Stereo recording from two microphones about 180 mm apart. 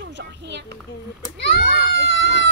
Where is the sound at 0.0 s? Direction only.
70° right (ahead or behind).